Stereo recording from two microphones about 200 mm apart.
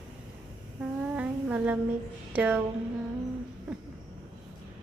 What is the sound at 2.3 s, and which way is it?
Speech, 5° right (ahead or behind).